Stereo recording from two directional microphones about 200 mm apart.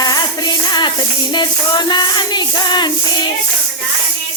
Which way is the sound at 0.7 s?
20° left (ahead or behind).